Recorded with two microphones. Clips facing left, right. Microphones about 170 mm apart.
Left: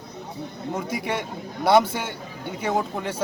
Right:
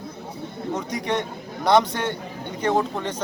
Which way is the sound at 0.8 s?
5° left (ahead or behind).